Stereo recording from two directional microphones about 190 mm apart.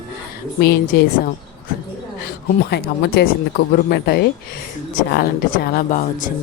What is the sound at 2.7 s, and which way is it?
Speech, 55° left (ahead or behind).